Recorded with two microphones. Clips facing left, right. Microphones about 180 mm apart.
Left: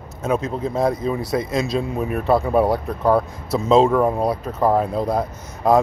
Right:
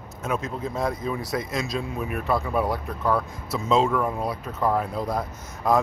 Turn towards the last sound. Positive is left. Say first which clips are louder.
# left 6 dB
turn(degrees=30)  # may be behind; listen again after turning